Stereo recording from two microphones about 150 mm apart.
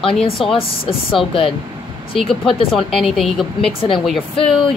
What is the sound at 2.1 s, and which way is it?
Speech, centre (ahead or behind).